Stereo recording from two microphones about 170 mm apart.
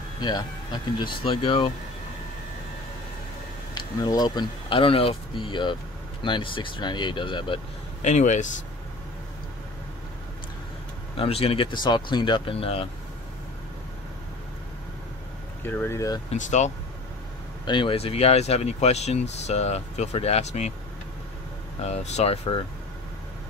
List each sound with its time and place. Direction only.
0.2 s speech: 25° left (ahead or behind)
3.7 s speech: 25° left (ahead or behind)
8.1 s speech: 45° left (ahead or behind)
11.1 s speech: 35° left (ahead or behind)
15.6 s speech: 10° left (ahead or behind)
16.3 s speech: 45° left (ahead or behind)
17.6 s speech: 30° left (ahead or behind)
21.8 s speech: 40° left (ahead or behind)